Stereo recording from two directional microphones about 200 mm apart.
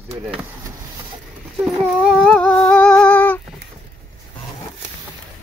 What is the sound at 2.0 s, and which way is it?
Humming, 5° left (ahead or behind).